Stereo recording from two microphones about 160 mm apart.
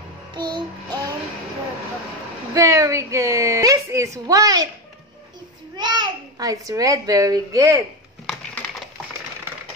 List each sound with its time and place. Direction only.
0.3 s music: 30° right (ahead or behind)
2.5 s a sound: 20° right (ahead or behind)
4.3 s a child's voice: 20° right (ahead or behind)
5.8 s a child's voice: 25° right (ahead or behind)